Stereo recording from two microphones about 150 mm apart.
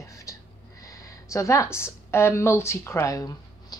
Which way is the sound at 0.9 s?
20° left (ahead or behind).